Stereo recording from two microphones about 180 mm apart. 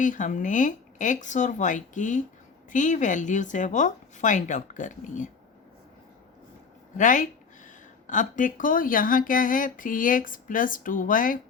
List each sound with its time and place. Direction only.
0.0 s speech: 45° left (ahead or behind)
6.9 s speech: 45° left (ahead or behind)